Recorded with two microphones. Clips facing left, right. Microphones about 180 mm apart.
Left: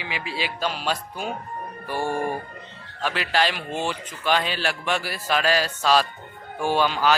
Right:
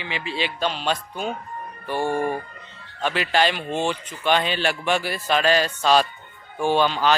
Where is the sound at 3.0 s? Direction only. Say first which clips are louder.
Right 2 dB; centre (ahead or behind).